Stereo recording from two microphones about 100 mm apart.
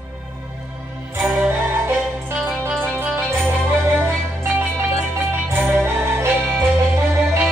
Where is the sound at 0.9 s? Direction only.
20° right (ahead or behind).